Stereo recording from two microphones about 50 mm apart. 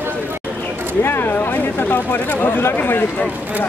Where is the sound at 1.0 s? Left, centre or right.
Left.